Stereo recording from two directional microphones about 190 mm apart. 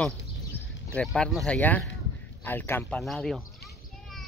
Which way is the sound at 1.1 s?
5° left (ahead or behind).